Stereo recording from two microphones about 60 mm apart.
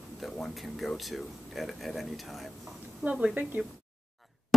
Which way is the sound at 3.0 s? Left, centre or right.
Centre.